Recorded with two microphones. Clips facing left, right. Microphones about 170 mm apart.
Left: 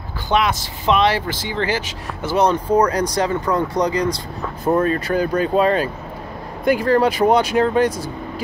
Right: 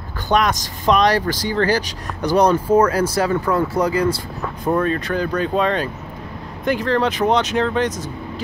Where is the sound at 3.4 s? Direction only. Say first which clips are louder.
Even; 5° right (ahead or behind).